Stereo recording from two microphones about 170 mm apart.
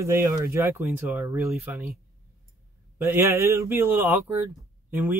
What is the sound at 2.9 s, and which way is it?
Speech, 15° right (ahead or behind).